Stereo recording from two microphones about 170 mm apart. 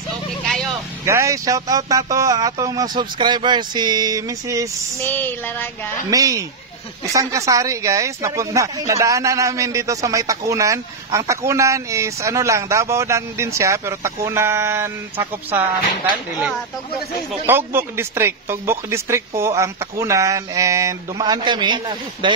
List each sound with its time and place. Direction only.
1.0 s speech: 15° right (ahead or behind)
5.0 s child singing: 10° left (ahead or behind)
6.0 s speech: 20° right (ahead or behind)
17.5 s speech: 15° right (ahead or behind)